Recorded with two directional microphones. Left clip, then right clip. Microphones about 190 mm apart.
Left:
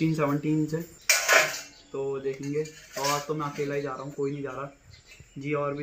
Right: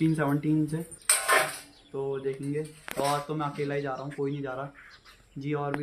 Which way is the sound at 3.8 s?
25° right (ahead or behind).